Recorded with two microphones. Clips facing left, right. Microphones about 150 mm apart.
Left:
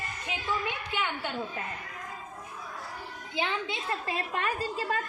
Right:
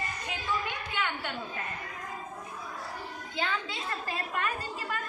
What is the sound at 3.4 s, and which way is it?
A woman's voice, 20° left (ahead or behind).